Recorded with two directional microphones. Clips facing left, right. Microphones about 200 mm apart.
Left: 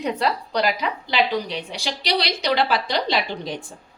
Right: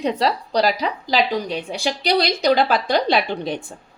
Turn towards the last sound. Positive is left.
turn(degrees=-55)  # may be behind; listen again after turning